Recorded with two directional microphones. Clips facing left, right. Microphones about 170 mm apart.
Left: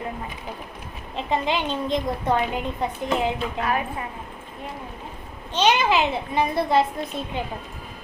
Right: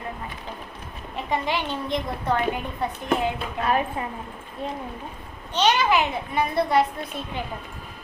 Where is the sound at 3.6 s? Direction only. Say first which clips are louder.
Right 4 dB; 25° right (ahead or behind).